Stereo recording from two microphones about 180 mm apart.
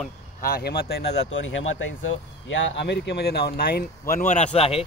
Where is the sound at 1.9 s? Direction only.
90° left; by 3.8 s 60° left (ahead or behind).